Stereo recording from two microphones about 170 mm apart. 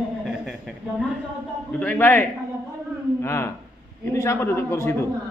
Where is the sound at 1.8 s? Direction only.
10° left (ahead or behind).